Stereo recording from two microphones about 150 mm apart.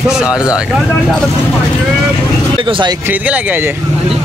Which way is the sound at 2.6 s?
35° right (ahead or behind).